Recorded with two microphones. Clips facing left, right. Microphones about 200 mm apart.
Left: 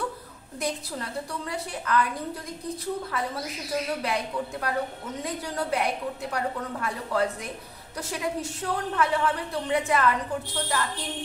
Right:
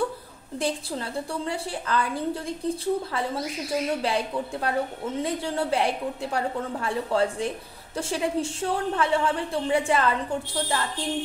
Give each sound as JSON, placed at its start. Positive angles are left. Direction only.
{"t": 0.6, "sound": "a woman's voice", "side_deg": -30}